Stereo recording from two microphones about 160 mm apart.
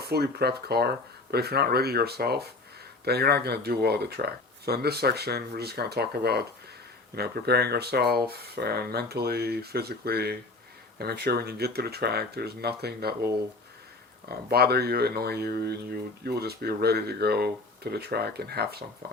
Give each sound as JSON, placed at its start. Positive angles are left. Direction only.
{"t": 0.0, "sound": "speech", "side_deg": -85}
{"t": 14.3, "sound": "speech", "side_deg": -80}